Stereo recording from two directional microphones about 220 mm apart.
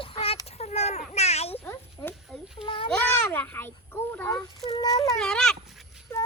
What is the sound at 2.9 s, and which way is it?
Child singing, 10° left (ahead or behind).